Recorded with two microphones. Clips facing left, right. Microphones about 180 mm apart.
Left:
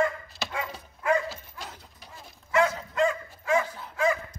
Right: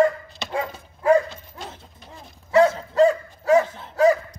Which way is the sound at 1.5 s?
25° right (ahead or behind).